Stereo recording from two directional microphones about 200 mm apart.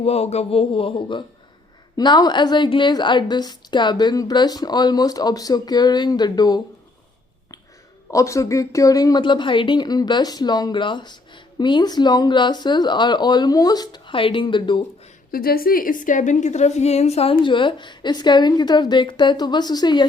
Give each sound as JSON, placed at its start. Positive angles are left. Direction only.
{"t": 0.0, "sound": "a woman's voice", "side_deg": 30}
{"t": 8.1, "sound": "a woman's voice", "side_deg": 15}
{"t": 15.3, "sound": "a woman's voice", "side_deg": 45}